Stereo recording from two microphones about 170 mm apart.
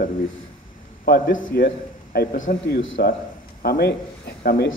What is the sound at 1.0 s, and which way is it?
A man's voice, 65° left (ahead or behind).